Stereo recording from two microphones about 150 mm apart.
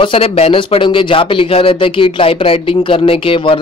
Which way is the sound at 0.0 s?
40° left (ahead or behind).